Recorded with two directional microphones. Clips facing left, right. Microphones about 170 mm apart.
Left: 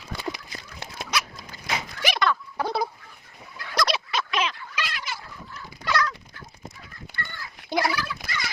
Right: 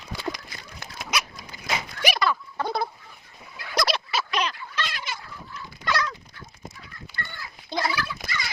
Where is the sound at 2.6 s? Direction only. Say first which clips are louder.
Left 1 dB; 5° left (ahead or behind).